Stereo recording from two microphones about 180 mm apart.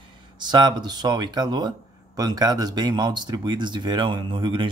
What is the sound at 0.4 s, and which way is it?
Speech, 25° right (ahead or behind).